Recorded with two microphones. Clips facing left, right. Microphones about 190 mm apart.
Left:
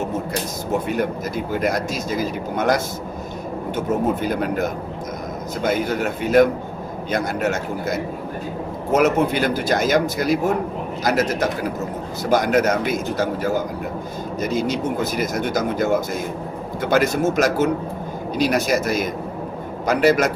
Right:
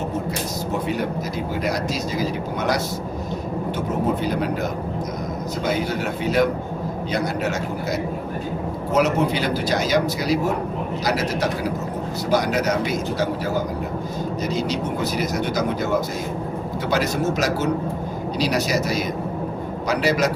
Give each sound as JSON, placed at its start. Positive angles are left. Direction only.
{"t": 1.6, "sound": "a man's voice", "side_deg": 50}
{"t": 4.2, "sound": "a man's voice", "side_deg": 50}
{"t": 5.6, "sound": "a man's voice", "side_deg": 50}